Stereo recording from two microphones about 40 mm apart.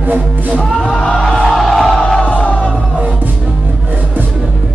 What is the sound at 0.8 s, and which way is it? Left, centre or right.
Music, centre.